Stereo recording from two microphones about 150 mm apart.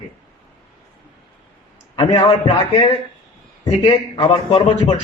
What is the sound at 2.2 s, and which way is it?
A man's voice, 35° left (ahead or behind).